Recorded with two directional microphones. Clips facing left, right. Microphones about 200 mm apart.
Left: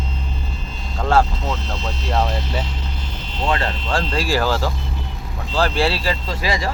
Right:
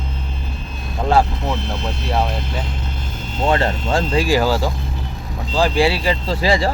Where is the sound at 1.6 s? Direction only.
60° right (ahead or behind).